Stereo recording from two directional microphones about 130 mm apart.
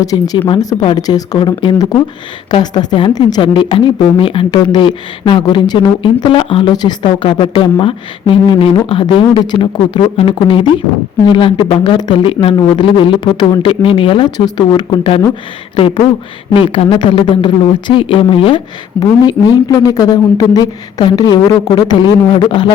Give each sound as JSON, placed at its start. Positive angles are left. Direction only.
{"t": 0.0, "sound": "speech", "side_deg": 25}
{"t": 0.3, "sound": "speech", "side_deg": 40}
{"t": 0.6, "sound": "speech", "side_deg": 30}
{"t": 3.4, "sound": "speech", "side_deg": 40}
{"t": 16.7, "sound": "speech", "side_deg": 40}
{"t": 18.9, "sound": "speech", "side_deg": 30}